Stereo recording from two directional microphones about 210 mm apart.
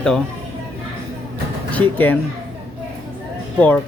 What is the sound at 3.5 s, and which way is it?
Speech, 5° left (ahead or behind).